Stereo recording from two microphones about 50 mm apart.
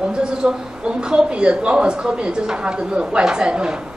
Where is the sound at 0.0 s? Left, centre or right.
Centre.